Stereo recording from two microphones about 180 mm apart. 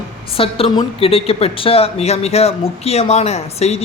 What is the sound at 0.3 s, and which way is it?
A woman's voice, 30° left (ahead or behind).